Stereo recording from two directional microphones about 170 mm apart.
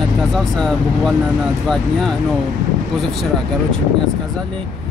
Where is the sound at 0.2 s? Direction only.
Centre (ahead or behind).